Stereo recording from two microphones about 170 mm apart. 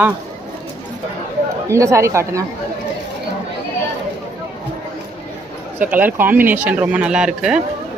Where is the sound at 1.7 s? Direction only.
15° right (ahead or behind).